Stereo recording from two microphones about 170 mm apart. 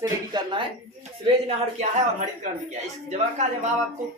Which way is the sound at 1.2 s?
40° right (ahead or behind).